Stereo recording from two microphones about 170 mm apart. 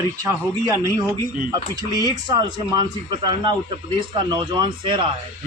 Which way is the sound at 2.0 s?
25° right (ahead or behind).